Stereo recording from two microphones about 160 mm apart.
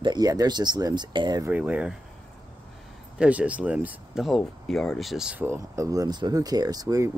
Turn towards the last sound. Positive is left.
turn(degrees=-20)  # may be behind; listen again after turning